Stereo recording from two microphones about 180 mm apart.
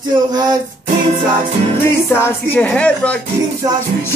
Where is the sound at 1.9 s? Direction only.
15° left (ahead or behind).